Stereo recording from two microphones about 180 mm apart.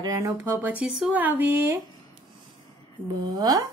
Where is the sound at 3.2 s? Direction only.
20° right (ahead or behind).